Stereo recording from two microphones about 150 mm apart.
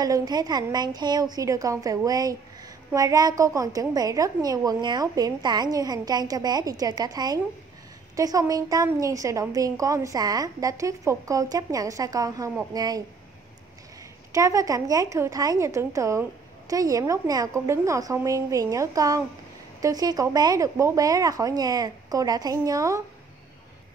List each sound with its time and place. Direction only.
0.0 s speech: 25° right (ahead or behind)
14.3 s speech: 20° right (ahead or behind)